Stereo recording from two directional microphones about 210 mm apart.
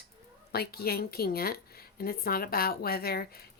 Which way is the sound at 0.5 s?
45° left (ahead or behind).